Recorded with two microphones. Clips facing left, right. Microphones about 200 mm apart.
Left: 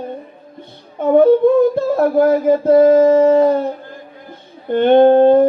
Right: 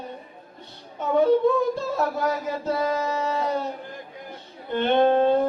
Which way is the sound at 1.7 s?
55° left (ahead or behind).